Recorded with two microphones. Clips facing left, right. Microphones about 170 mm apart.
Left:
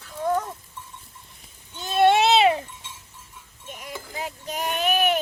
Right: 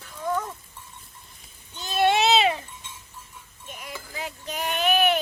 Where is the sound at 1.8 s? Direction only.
55° left (ahead or behind).